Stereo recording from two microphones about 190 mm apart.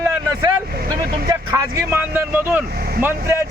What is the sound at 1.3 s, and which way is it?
Speech, 15° right (ahead or behind).